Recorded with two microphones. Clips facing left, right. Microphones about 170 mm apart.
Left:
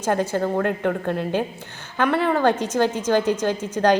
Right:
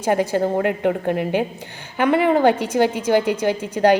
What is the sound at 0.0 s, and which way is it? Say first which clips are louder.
A woman's voice: right 3 dB; 15° right (ahead or behind).